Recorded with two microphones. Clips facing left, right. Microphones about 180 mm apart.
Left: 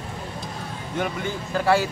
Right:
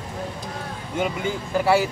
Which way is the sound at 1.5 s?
10° right (ahead or behind).